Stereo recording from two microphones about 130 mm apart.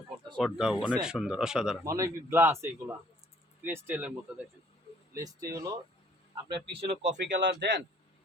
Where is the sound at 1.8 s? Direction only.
25° right (ahead or behind).